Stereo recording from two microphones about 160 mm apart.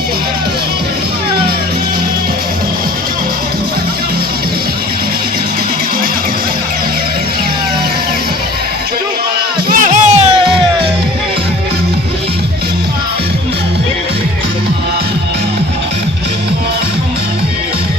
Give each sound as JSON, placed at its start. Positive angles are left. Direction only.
{"t": 9.6, "sound": "music", "side_deg": -55}